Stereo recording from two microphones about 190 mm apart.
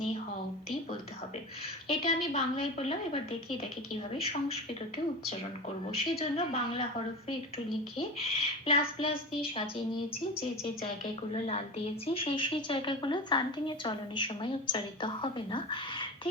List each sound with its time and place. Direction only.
1.9 s a woman's voice: 35° left (ahead or behind)
5.9 s a woman's voice: 30° left (ahead or behind)
7.9 s a woman's voice: 30° left (ahead or behind)
11.3 s a woman's voice: 30° left (ahead or behind)